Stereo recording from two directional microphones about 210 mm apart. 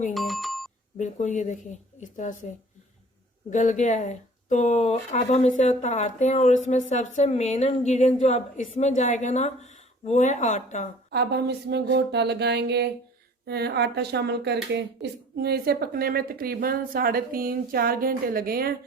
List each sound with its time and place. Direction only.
0.1 s a sound: centre (ahead or behind)
0.9 s speech: 35° left (ahead or behind)
3.5 s speech: 35° left (ahead or behind)
11.1 s a woman's voice: 50° right (ahead or behind)